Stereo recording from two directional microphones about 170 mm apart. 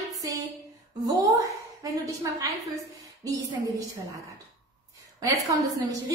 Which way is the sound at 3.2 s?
20° right (ahead or behind).